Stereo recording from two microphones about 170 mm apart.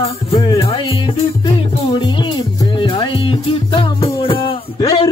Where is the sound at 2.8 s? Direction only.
30° left (ahead or behind).